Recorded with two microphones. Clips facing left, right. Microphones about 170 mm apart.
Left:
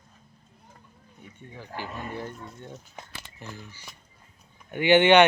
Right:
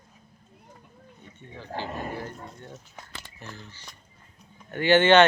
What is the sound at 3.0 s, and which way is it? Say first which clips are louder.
Speech: left 1 dB; 15° left (ahead or behind).